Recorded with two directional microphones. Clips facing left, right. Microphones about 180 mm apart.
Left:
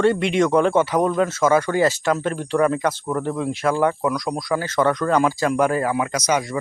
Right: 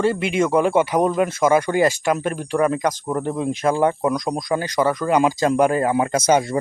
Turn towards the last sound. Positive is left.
turn(degrees=-30)  # may be behind; listen again after turning